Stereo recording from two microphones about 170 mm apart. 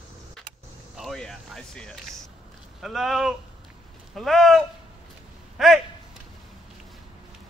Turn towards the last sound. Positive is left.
turn(degrees=0)  # may be behind; listen again after turning